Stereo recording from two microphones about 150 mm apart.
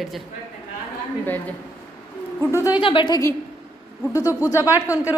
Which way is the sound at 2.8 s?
30° left (ahead or behind).